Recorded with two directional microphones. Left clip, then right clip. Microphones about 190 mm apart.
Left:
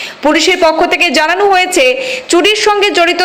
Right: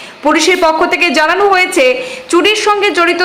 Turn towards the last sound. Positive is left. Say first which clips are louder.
# left 1 dB
turn(degrees=15)  # may be behind; listen again after turning